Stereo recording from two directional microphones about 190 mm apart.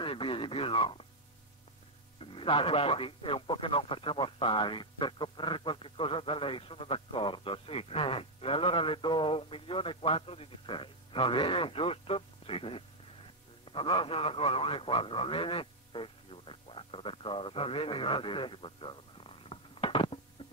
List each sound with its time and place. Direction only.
0.0 s radio: 25° left (ahead or behind)
2.1 s a man's voice: 25° left (ahead or behind)